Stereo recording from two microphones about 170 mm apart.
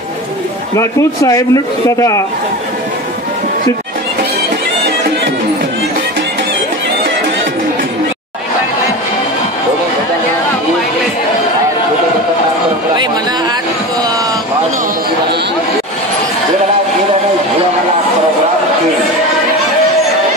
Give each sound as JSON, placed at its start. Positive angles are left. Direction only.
{"t": 0.7, "sound": "speech", "side_deg": 20}